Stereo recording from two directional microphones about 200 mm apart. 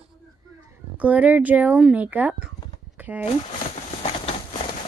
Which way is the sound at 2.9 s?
10° right (ahead or behind).